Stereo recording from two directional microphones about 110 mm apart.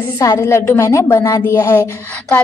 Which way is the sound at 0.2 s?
30° left (ahead or behind).